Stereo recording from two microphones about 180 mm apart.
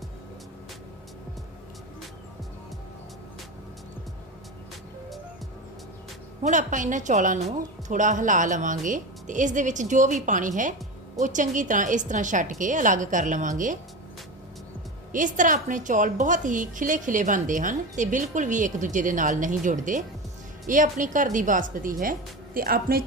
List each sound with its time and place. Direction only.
6.4 s a woman's voice: 45° right (ahead or behind)
15.1 s a woman's voice: 45° right (ahead or behind)